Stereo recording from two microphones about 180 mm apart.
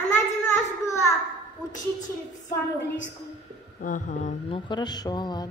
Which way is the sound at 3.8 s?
45° left (ahead or behind).